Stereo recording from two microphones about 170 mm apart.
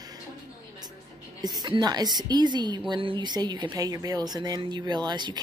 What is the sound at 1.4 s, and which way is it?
Speech, 25° right (ahead or behind).